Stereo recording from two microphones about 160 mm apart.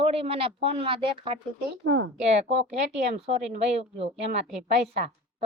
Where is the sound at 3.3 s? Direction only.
40° right (ahead or behind).